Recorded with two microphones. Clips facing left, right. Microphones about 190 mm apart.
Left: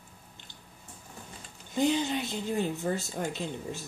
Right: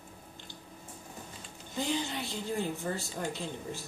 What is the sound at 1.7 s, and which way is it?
A woman's voice, 20° left (ahead or behind).